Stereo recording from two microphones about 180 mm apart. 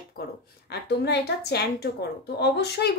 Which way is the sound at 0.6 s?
70° left (ahead or behind).